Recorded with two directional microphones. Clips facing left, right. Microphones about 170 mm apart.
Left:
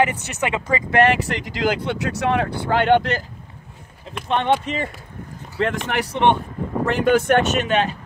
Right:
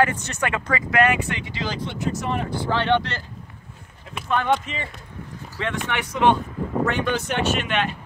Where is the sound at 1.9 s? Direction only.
70° left (ahead or behind).